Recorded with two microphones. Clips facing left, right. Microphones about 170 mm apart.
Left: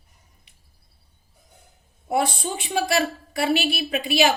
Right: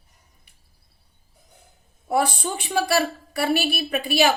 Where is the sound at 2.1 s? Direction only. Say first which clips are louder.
Right 1 dB; 25° left (ahead or behind).